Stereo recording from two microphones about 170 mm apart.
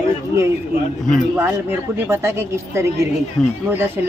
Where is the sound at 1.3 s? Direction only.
15° right (ahead or behind).